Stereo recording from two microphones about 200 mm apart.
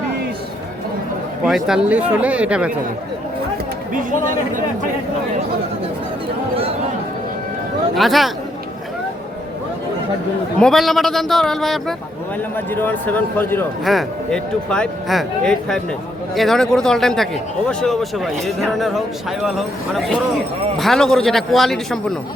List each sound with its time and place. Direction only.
1.5 s speech: centre (ahead or behind)
3.9 s speech: 40° right (ahead or behind)
7.9 s speech: centre (ahead or behind)
10.6 s speech: centre (ahead or behind)